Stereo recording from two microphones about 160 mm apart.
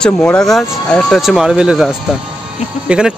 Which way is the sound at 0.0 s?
5° left (ahead or behind).